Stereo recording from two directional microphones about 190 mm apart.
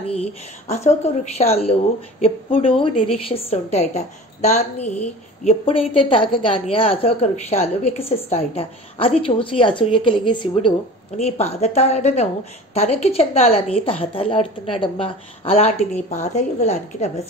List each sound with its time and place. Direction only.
0.0 s a woman's voice: 35° left (ahead or behind)